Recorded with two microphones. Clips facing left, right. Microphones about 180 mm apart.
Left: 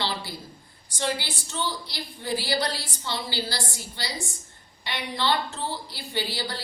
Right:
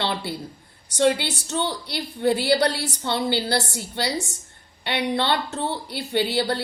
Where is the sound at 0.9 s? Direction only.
65° right (ahead or behind).